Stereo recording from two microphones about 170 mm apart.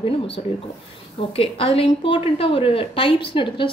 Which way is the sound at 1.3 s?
35° left (ahead or behind).